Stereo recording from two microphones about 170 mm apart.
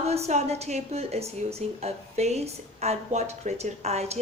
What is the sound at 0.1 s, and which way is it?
A woman's voice, 40° right (ahead or behind).